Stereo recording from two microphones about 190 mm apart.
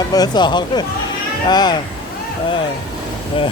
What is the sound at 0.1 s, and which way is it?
Speech, 20° left (ahead or behind).